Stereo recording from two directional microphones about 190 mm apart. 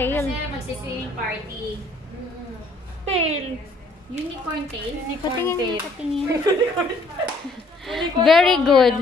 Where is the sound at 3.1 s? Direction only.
35° right (ahead or behind).